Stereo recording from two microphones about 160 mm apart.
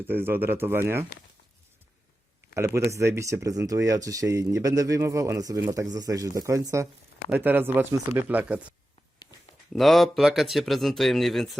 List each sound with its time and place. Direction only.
0.0 s speech: 15° right (ahead or behind)
2.6 s speech: 15° right (ahead or behind)
9.7 s speech: centre (ahead or behind)